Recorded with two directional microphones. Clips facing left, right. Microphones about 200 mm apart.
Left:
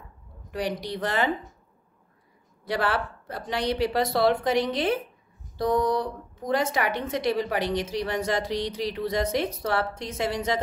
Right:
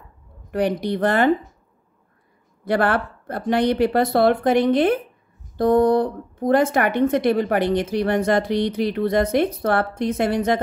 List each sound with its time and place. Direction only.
0.5 s a woman's voice: 55° right (ahead or behind)
2.6 s a woman's voice: 55° right (ahead or behind)